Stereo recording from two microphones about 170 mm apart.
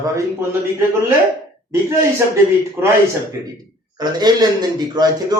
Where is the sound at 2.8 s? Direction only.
10° right (ahead or behind).